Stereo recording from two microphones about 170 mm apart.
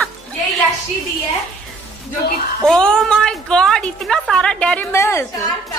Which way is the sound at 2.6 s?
5° left (ahead or behind).